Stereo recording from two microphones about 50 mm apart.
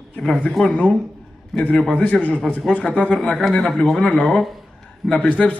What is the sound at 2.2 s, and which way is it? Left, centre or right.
Speech, left.